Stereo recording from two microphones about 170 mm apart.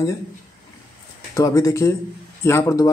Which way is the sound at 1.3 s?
20° left (ahead or behind).